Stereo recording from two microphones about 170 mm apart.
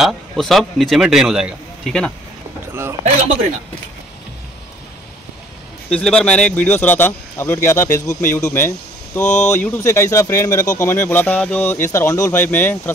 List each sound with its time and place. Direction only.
0.0 s a man's voice: centre (ahead or behind)
2.7 s a sound: 15° right (ahead or behind)
5.9 s speech: 5° left (ahead or behind)
9.2 s speech: 45° left (ahead or behind)
9.5 s speech: 15° left (ahead or behind)